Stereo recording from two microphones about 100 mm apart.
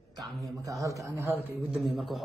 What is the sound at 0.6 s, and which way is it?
Speech, 35° right (ahead or behind).